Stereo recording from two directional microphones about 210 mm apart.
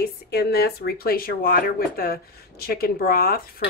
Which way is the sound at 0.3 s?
50° left (ahead or behind).